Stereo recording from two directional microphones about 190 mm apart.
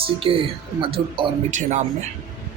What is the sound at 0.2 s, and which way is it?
Speech, 30° right (ahead or behind).